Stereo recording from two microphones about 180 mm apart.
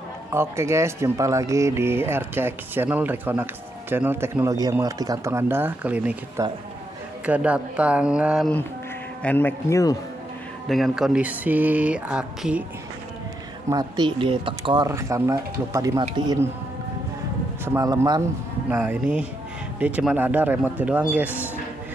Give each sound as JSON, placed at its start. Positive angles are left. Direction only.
{"t": 0.3, "sound": "speech", "side_deg": -15}
{"t": 9.2, "sound": "a man's voice", "side_deg": 10}
{"t": 10.7, "sound": "speech", "side_deg": 0}
{"t": 13.7, "sound": "speech", "side_deg": -20}
{"t": 17.7, "sound": "speech", "side_deg": -20}
{"t": 18.7, "sound": "speech", "side_deg": -10}